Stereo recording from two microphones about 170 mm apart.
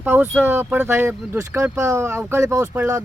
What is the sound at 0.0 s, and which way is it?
Speech, 10° right (ahead or behind).